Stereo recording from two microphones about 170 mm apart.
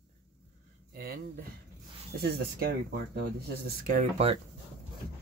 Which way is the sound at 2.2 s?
65° right (ahead or behind).